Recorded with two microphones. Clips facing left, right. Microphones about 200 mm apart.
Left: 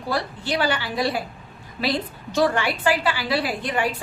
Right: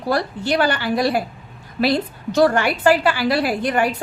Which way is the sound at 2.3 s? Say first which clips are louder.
Right 5 dB; 45° right (ahead or behind).